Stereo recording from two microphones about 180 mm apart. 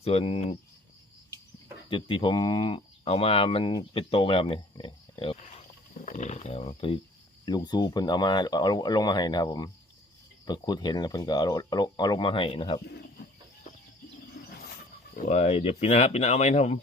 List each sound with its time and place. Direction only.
0.0 s speech: 35° left (ahead or behind)
1.9 s speech: 25° left (ahead or behind)
5.4 s wild animals: 40° left (ahead or behind)
6.1 s speech: 40° left (ahead or behind)
14.4 s wild animals: 90° left
15.1 s speech: 40° left (ahead or behind)